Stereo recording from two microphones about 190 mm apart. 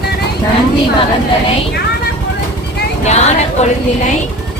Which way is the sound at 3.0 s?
35° left (ahead or behind).